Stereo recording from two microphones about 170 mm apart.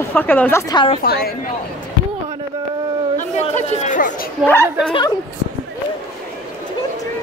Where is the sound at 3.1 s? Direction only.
45° left (ahead or behind).